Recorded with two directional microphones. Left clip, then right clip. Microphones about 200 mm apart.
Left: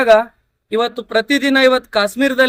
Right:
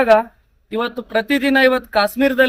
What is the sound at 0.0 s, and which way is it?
Speech, 5° left (ahead or behind).